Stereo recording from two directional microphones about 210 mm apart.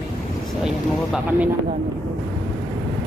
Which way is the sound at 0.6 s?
5° right (ahead or behind).